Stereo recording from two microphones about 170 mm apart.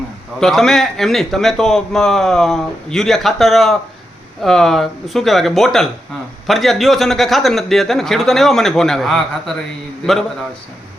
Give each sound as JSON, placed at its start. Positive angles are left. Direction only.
{"t": 0.3, "sound": "a man's voice", "side_deg": 0}